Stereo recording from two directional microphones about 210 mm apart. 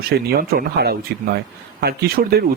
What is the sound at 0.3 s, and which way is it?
Speech, 45° right (ahead or behind).